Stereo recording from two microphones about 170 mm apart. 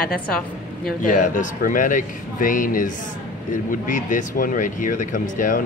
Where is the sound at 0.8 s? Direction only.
50° left (ahead or behind).